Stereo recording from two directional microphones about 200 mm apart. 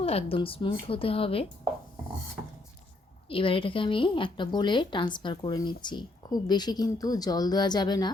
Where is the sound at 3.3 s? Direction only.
25° left (ahead or behind).